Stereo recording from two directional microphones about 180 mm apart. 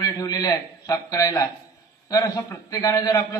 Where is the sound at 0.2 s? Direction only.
20° left (ahead or behind).